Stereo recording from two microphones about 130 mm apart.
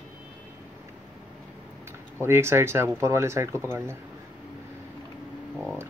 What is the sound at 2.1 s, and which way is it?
Speech, 20° right (ahead or behind).